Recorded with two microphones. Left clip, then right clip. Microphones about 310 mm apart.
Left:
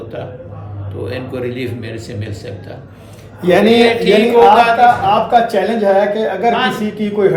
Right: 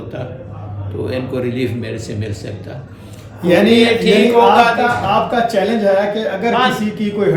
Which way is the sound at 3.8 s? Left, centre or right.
Centre.